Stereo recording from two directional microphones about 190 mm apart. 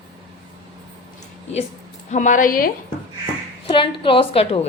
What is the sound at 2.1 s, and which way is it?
Speech, 40° left (ahead or behind).